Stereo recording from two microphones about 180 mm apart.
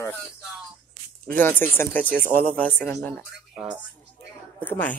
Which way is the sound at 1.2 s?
10° left (ahead or behind).